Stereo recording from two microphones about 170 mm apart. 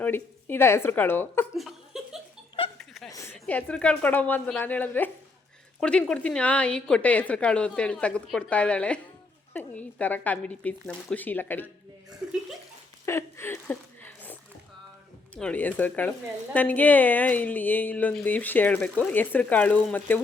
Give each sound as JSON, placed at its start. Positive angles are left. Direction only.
{"t": 0.0, "sound": "a woman's voice", "side_deg": 10}
{"t": 1.5, "sound": "laughter", "side_deg": 0}
{"t": 2.7, "sound": "chuckle", "side_deg": 0}
{"t": 3.1, "sound": "a sound", "side_deg": 20}
{"t": 3.3, "sound": "speech", "side_deg": 5}
{"t": 12.2, "sound": "speech", "side_deg": -5}
{"t": 13.1, "sound": "a sound", "side_deg": 15}
{"t": 15.4, "sound": "speech", "side_deg": 10}